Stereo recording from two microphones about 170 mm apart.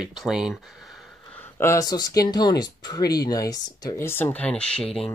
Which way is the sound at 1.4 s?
15° left (ahead or behind).